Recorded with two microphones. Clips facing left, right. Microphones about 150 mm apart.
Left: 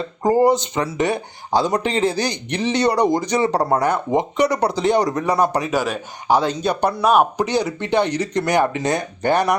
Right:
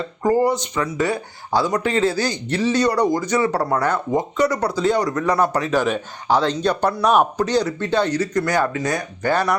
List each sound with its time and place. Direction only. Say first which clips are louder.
0.3 s speech: left 2 dB; 20° left (ahead or behind)